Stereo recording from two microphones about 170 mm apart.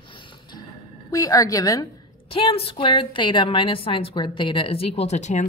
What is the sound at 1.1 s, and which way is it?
Speech, 20° left (ahead or behind).